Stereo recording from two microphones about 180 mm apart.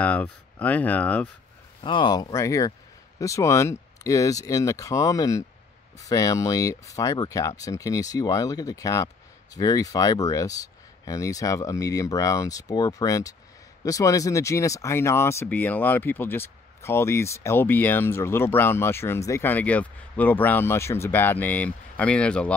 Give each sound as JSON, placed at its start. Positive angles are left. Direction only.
{"t": 0.0, "sound": "speech", "side_deg": 10}
{"t": 1.8, "sound": "speech", "side_deg": 25}